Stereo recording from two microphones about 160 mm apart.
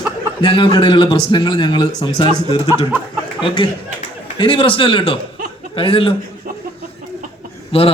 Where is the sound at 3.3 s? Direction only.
30° left (ahead or behind).